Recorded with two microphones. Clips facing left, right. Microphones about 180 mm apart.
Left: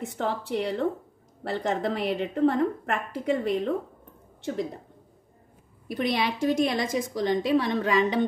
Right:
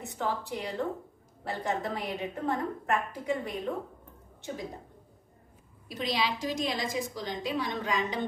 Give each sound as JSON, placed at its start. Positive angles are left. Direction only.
{"t": 0.2, "sound": "a woman's voice", "side_deg": 70}
{"t": 5.9, "sound": "a woman's voice", "side_deg": 60}